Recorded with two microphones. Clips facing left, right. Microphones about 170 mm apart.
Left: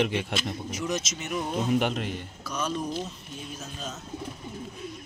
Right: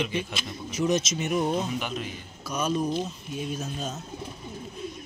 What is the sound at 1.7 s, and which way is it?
Speech, 65° left (ahead or behind).